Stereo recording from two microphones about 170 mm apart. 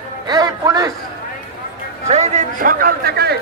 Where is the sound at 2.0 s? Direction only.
45° right (ahead or behind); by 3.4 s 70° right (ahead or behind).